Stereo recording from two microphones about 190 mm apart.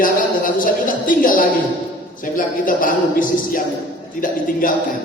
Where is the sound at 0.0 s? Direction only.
45° left (ahead or behind).